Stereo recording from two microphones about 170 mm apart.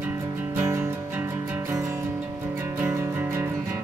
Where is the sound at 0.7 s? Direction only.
15° right (ahead or behind).